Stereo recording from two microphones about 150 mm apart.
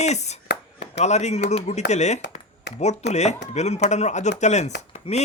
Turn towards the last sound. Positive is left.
turn(degrees=50)  # may be behind; listen again after turning